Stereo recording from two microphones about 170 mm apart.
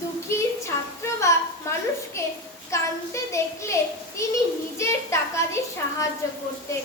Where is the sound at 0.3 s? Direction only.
15° left (ahead or behind).